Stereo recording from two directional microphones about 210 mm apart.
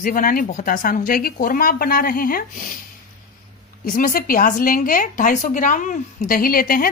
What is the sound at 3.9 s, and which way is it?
A woman's voice, 45° left (ahead or behind).